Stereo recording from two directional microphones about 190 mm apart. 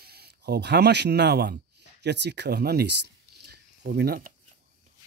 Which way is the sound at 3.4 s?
60° right (ahead or behind).